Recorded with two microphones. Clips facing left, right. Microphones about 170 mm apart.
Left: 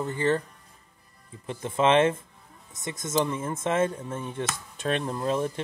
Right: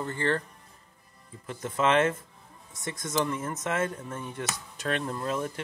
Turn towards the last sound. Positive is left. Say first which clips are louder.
# left 4 dB
turn(degrees=25)  # may be behind; listen again after turning